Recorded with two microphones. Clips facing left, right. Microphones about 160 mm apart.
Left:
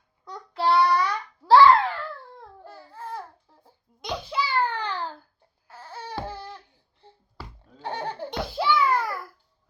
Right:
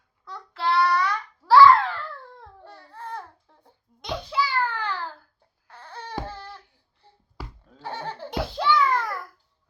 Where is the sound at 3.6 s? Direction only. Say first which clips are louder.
Left 1 dB; centre (ahead or behind).